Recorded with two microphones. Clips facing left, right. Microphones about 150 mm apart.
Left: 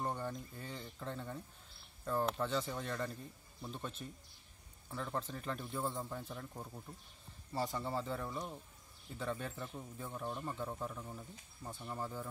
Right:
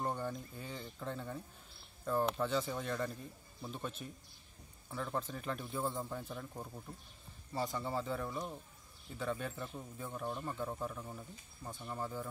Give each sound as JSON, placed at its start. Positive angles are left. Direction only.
{"t": 0.0, "sound": "speech", "side_deg": -5}